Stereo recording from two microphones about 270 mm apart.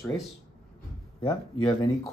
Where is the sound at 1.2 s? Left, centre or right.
Centre.